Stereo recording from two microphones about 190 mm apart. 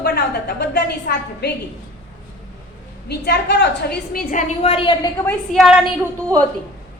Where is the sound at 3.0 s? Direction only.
60° left (ahead or behind); by 5.1 s 25° left (ahead or behind).